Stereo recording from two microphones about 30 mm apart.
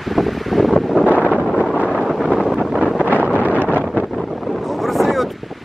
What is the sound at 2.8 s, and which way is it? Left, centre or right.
Wind noise, left.